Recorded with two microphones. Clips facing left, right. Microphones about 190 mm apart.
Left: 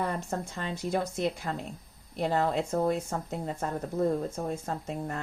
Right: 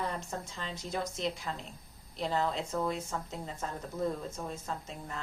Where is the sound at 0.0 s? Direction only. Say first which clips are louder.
Left 5 dB; 55° left (ahead or behind).